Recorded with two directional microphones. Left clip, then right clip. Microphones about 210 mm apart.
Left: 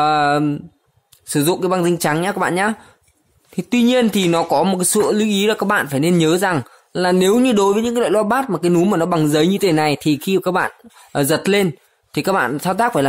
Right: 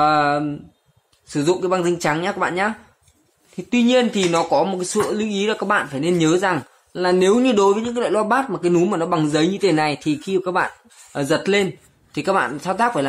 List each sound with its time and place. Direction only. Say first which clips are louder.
0.0 s speech: left 2 dB; 50° left (ahead or behind)